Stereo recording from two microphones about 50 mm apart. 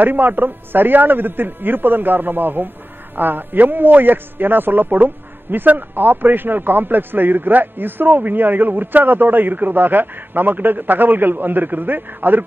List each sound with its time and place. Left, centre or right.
0.0 s a man's voice: right